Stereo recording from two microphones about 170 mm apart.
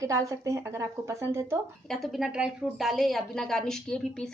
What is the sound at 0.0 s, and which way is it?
Speech, 20° right (ahead or behind).